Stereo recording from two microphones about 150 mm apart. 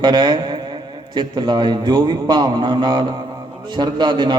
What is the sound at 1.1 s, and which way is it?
A man's voice, 30° right (ahead or behind).